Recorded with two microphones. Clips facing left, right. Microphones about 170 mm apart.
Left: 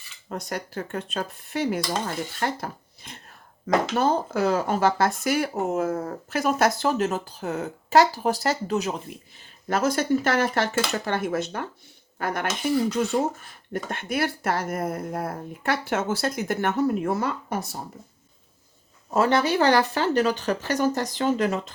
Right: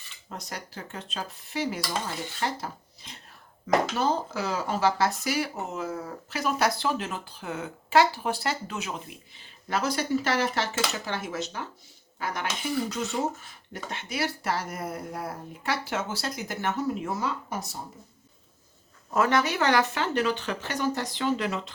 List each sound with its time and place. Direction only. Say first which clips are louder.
0.3 s speech: left 7 dB; 55° left (ahead or behind)
19.1 s speech: left 4 dB; 30° left (ahead or behind); by 21.7 s 45° left (ahead or behind)